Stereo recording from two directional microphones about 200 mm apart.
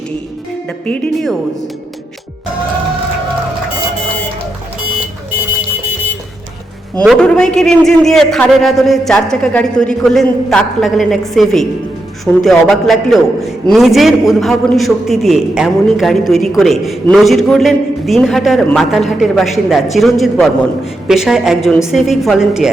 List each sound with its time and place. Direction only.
0.9 s a man's voice: 5° left (ahead or behind)
7.0 s a man's voice: centre (ahead or behind)